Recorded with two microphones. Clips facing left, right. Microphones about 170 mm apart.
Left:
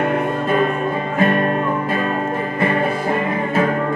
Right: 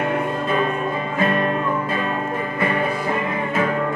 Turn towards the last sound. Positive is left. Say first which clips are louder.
# left 3 dB
turn(degrees=40)  # may be behind; listen again after turning